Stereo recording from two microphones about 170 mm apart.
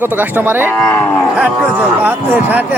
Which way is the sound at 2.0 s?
10° right (ahead or behind).